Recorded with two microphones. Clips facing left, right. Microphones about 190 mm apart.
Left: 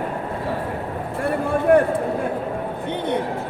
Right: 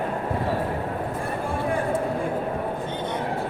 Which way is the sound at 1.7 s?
65° left (ahead or behind).